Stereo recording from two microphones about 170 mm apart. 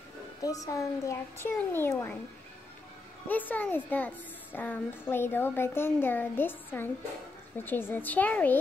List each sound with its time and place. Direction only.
0.4 s a woman's voice: 20° left (ahead or behind)
3.3 s a woman's voice: 10° left (ahead or behind)